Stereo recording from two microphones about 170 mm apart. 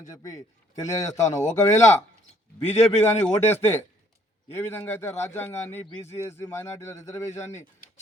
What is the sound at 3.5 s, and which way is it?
A man's voice, 15° left (ahead or behind).